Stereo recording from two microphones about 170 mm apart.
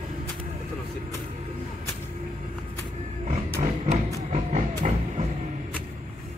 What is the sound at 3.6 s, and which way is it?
Music, 40° right (ahead or behind).